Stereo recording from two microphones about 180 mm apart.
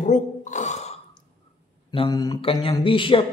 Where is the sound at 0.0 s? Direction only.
45° left (ahead or behind).